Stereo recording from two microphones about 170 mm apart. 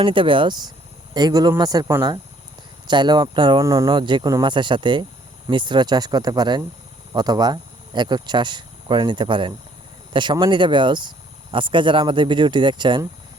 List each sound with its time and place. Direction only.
0.0 s speech: 30° right (ahead or behind)